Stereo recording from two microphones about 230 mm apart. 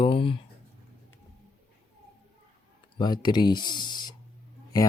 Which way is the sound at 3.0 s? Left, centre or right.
Centre.